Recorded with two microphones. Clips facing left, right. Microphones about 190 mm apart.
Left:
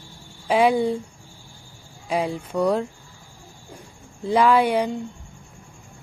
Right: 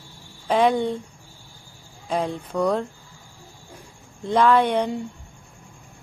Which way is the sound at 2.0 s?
10° left (ahead or behind).